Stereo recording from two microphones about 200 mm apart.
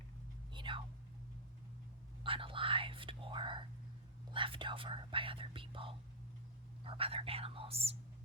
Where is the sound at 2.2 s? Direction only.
25° right (ahead or behind).